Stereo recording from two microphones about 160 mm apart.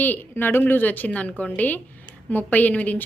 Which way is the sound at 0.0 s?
10° left (ahead or behind).